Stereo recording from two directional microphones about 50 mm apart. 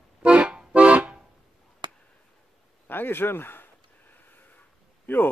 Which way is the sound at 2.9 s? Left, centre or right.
Left.